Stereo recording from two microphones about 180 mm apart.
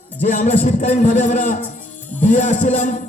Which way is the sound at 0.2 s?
45° left (ahead or behind).